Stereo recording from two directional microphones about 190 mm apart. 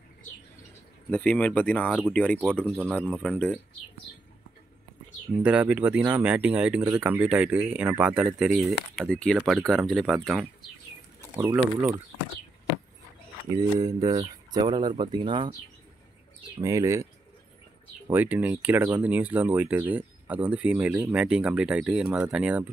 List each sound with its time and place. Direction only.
1.1 s speech: 5° left (ahead or behind)
5.4 s speech: 5° right (ahead or behind)
13.5 s speech: 20° right (ahead or behind)
16.6 s speech: 15° right (ahead or behind)